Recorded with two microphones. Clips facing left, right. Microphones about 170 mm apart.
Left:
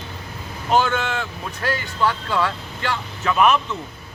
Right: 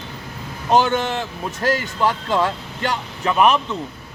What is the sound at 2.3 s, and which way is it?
Speech, 40° right (ahead or behind).